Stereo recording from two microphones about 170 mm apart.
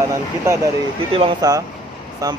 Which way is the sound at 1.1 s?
35° right (ahead or behind).